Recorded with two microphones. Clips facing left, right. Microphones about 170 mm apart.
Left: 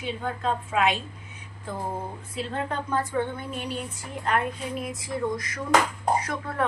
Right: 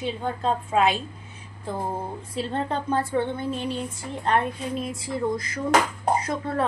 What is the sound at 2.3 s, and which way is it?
A woman's voice, 30° right (ahead or behind).